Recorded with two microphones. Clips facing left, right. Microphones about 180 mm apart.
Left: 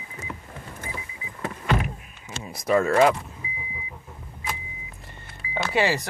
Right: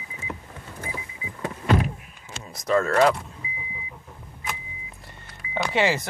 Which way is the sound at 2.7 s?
10° left (ahead or behind).